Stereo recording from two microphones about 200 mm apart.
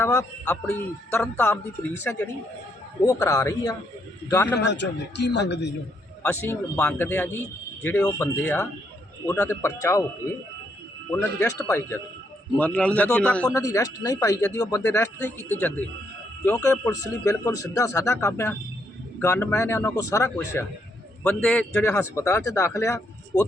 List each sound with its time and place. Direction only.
0.0 s a man's voice: 15° left (ahead or behind)
4.7 s speech: 60° left (ahead or behind)
6.2 s a man's voice: 10° left (ahead or behind)
11.1 s a man's voice: 10° left (ahead or behind)
21.2 s a man's voice: 5° left (ahead or behind)